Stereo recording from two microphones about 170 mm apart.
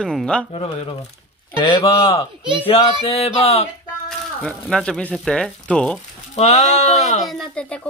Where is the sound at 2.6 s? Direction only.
35° left (ahead or behind).